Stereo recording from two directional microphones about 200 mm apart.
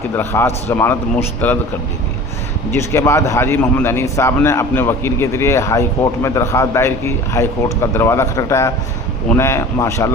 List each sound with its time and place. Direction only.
0.2 s a man's voice: 10° left (ahead or behind)
2.7 s a man's voice: 15° left (ahead or behind)